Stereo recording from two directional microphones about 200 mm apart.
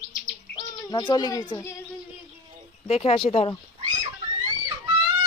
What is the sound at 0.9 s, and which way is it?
Speech, 20° left (ahead or behind).